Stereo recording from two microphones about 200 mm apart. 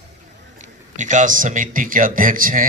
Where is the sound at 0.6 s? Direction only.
40° right (ahead or behind).